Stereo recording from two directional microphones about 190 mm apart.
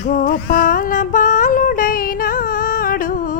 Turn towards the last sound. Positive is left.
turn(degrees=45)  # may be behind; listen again after turning